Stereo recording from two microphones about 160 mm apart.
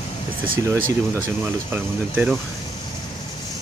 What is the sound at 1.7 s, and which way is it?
Speech, 10° right (ahead or behind).